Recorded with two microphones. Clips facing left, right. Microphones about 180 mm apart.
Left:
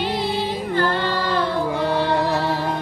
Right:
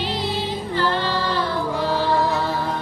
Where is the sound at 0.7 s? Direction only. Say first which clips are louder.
Left 1 dB; 50° left (ahead or behind).